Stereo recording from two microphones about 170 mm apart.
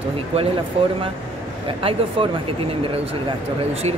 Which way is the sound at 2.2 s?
35° right (ahead or behind).